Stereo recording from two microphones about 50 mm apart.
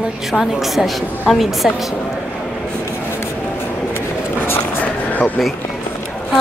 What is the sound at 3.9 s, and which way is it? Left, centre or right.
Writing, left.